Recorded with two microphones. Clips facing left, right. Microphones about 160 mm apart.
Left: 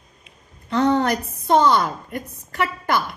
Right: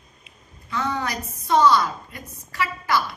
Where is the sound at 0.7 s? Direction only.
60° left (ahead or behind).